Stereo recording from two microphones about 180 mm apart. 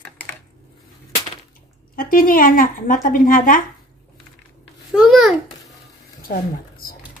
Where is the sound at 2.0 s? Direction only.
50° left (ahead or behind).